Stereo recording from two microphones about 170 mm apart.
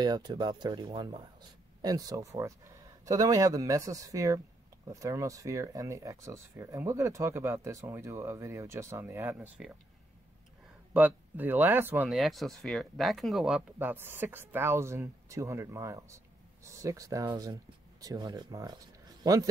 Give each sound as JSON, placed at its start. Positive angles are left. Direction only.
{"t": 0.0, "sound": "speech", "side_deg": -25}
{"t": 10.9, "sound": "speech", "side_deg": -10}
{"t": 12.1, "sound": "a man's voice", "side_deg": 0}